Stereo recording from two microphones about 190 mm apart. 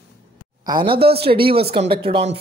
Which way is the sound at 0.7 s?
25° right (ahead or behind).